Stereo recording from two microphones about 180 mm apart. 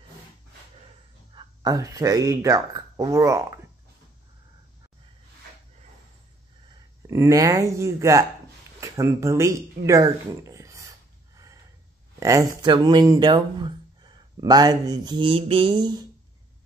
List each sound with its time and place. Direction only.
1.3 s speech: 25° right (ahead or behind)
7.1 s speech: 15° right (ahead or behind)
8.8 s a sound: 15° right (ahead or behind)
12.2 s speech: 15° right (ahead or behind)